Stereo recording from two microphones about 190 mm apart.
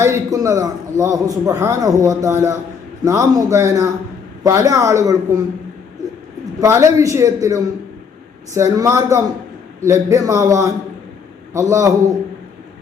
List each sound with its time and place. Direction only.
0.0 s a man's voice: 15° right (ahead or behind)
6.6 s a man's voice: 15° right (ahead or behind)